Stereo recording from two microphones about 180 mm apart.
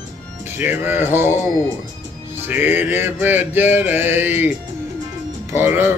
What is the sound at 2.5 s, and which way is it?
Mantra, 10° right (ahead or behind).